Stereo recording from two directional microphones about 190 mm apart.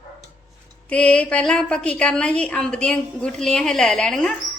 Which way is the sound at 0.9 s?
5° left (ahead or behind).